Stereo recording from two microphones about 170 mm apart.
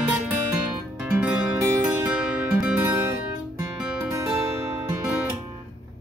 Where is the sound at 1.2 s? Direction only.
10° right (ahead or behind).